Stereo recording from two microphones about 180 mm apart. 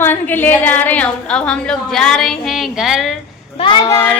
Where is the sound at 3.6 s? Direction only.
25° left (ahead or behind).